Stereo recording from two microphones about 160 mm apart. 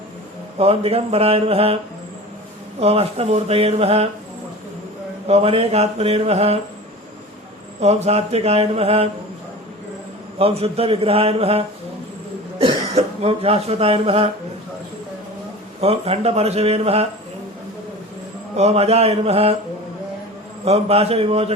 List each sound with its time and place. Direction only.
0.6 s a man's voice: 35° right (ahead or behind)
2.8 s a man's voice: 40° right (ahead or behind)
5.3 s a man's voice: 40° right (ahead or behind)
7.8 s a man's voice: 40° right (ahead or behind)
10.3 s a man's voice: 40° right (ahead or behind)
13.0 s a man's voice: 40° right (ahead or behind)
15.8 s a man's voice: 40° right (ahead or behind)
18.5 s a man's voice: 40° right (ahead or behind)
20.7 s a man's voice: 40° right (ahead or behind)